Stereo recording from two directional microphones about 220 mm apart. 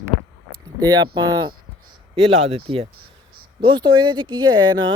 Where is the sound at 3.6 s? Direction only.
20° right (ahead or behind).